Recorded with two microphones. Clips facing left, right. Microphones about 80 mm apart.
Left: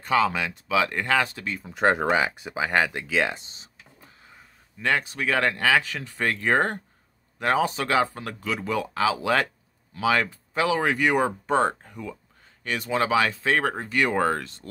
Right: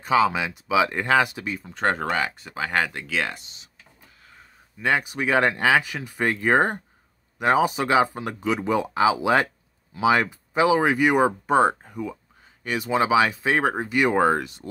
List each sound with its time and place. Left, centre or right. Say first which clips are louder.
0.0 s speech: right 2 dB; centre
1.6 s speech: left 3 dB; centre
3.3 s speech: even; left
4.8 s speech: right 2 dB; centre